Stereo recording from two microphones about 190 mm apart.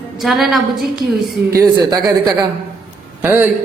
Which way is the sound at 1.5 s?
20° right (ahead or behind).